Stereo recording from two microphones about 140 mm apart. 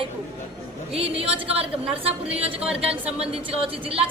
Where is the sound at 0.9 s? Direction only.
45° right (ahead or behind).